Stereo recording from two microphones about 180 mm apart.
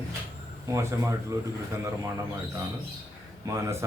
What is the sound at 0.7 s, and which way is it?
Speech, 15° right (ahead or behind).